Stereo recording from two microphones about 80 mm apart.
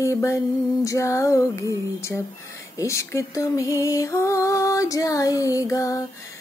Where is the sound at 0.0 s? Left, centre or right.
Left.